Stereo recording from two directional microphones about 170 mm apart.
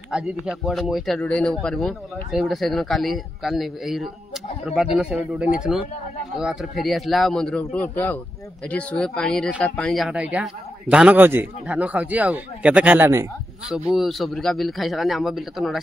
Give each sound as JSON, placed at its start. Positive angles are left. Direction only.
{"t": 0.1, "sound": "a man's voice", "side_deg": -5}
{"t": 13.9, "sound": "speech", "side_deg": 0}